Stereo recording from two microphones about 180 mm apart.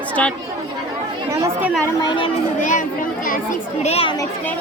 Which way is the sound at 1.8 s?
25° left (ahead or behind).